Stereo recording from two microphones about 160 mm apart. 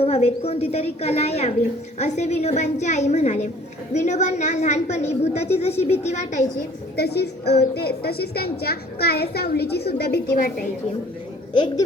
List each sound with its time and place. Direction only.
0.0 s a woman's voice: 40° left (ahead or behind)
6.9 s a woman's voice: 85° left